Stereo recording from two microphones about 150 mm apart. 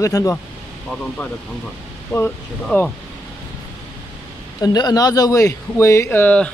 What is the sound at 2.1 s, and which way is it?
Speech, 15° left (ahead or behind).